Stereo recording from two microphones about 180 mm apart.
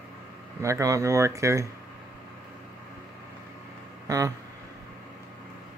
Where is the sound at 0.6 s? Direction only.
15° right (ahead or behind).